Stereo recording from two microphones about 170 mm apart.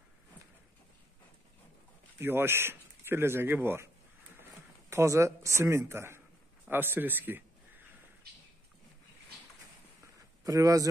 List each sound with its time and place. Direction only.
2.1 s speech: 15° right (ahead or behind)
4.4 s a sound: 15° right (ahead or behind)
5.6 s speech: 15° right (ahead or behind)
10.4 s speech: 20° right (ahead or behind)